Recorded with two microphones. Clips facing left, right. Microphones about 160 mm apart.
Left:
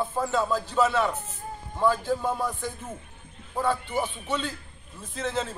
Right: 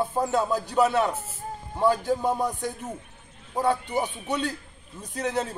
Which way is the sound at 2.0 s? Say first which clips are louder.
Right 2 dB; 15° right (ahead or behind).